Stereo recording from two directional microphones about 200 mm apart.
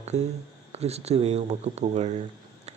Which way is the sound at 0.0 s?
35° right (ahead or behind).